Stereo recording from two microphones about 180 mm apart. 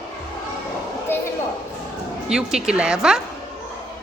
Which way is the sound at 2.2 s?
5° right (ahead or behind).